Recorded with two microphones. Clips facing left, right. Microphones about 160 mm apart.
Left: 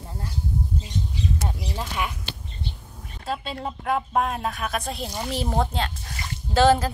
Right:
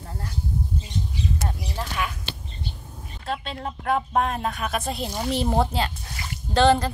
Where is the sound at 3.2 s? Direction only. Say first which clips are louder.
Left 1 dB; 5° left (ahead or behind).